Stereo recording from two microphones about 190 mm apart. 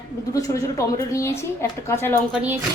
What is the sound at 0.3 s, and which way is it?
A woman's voice, 15° left (ahead or behind).